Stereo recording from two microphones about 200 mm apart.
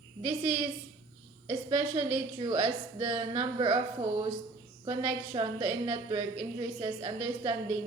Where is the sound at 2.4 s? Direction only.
25° right (ahead or behind).